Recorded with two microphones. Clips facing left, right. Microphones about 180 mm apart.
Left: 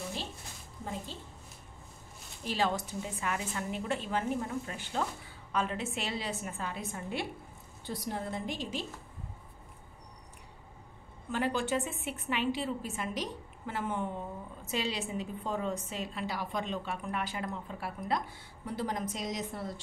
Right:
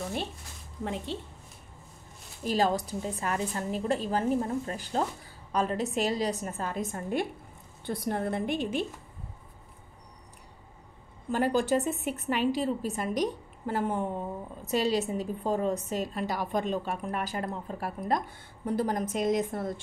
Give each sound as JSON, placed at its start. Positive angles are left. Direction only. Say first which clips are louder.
{"t": 0.8, "sound": "a woman's voice", "louder": "right 6 dB", "side_deg": -75}
{"t": 2.4, "sound": "a woman's voice", "louder": "right 5 dB", "side_deg": -40}
{"t": 11.2, "sound": "a woman's voice", "louder": "right 6 dB", "side_deg": -40}